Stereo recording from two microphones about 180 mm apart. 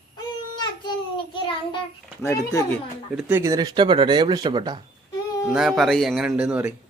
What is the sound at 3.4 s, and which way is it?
Speech, 20° right (ahead or behind).